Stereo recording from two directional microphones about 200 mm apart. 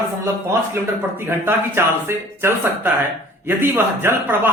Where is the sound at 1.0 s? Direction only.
10° right (ahead or behind).